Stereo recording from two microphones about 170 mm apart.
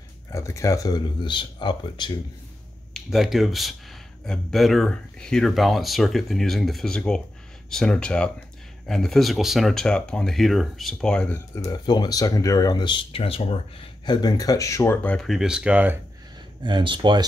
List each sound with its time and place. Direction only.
0.3 s speech: 15° left (ahead or behind)
2.9 s speech: centre (ahead or behind)
16.6 s speech: 30° right (ahead or behind)